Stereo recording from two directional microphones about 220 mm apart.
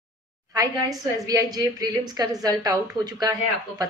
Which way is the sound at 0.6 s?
15° right (ahead or behind).